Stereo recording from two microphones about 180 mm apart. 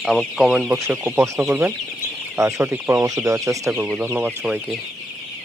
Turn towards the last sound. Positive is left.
turn(degrees=-10)  # may be behind; listen again after turning